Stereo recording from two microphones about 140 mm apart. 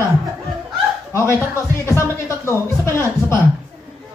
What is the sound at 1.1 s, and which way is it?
Music, 20° left (ahead or behind).